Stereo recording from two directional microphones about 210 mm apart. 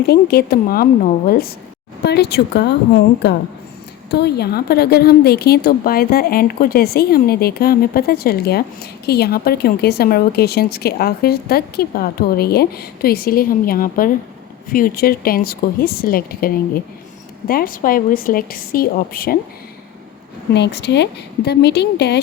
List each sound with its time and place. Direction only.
0.0 s a woman's voice: 50° left (ahead or behind)
4.1 s a woman's voice: 50° left (ahead or behind)
20.5 s a woman's voice: 55° left (ahead or behind)